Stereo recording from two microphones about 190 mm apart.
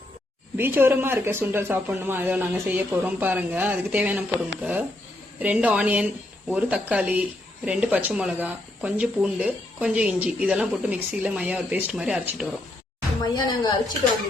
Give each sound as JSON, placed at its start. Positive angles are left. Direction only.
{"t": 0.5, "sound": "speech", "side_deg": -10}
{"t": 13.2, "sound": "speech", "side_deg": 20}